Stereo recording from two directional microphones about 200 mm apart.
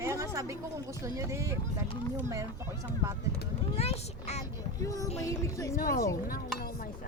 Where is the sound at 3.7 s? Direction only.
30° left (ahead or behind).